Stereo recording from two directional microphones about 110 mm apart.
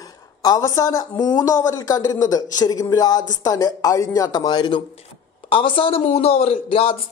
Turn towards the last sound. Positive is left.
turn(degrees=55)  # may be behind; listen again after turning